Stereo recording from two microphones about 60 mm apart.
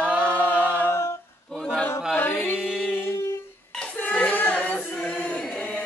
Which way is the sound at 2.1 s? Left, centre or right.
Left.